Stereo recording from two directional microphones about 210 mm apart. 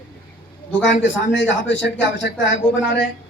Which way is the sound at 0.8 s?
60° left (ahead or behind).